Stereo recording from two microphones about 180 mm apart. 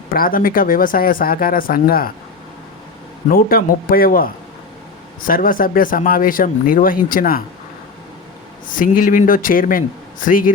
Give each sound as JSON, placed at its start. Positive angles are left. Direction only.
{"t": 0.1, "sound": "speech", "side_deg": 50}
{"t": 3.2, "sound": "speech", "side_deg": 55}
{"t": 8.7, "sound": "speech", "side_deg": 50}